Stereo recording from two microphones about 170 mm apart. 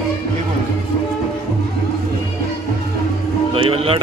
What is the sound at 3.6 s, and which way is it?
Speech, 30° right (ahead or behind).